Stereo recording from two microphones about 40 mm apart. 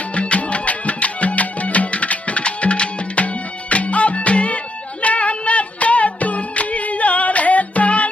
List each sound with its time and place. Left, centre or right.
0.1 s music: left